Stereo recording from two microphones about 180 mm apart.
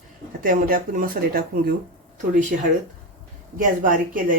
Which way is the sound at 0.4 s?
50° right (ahead or behind).